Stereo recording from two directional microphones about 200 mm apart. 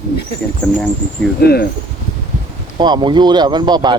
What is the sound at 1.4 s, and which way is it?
Speech, 50° left (ahead or behind).